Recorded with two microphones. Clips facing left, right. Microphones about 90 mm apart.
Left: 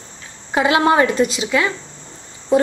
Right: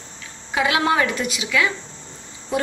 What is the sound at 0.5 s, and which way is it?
A woman's voice, 30° left (ahead or behind).